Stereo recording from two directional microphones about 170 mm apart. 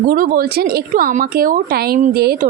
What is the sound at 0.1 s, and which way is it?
Speech, 55° right (ahead or behind).